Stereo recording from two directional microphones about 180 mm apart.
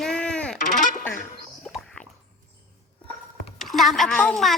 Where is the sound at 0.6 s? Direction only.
45° left (ahead or behind).